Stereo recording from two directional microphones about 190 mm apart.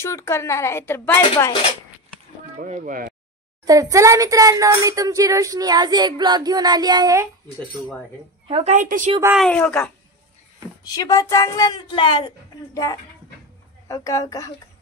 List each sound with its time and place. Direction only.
0.0 s speech: 15° left (ahead or behind)
2.6 s speech: 40° right (ahead or behind)
3.6 s speech: 15° right (ahead or behind)
8.5 s a woman's voice: 35° right (ahead or behind)
9.4 s speech: 5° left (ahead or behind)
10.9 s a woman's voice: 20° left (ahead or behind)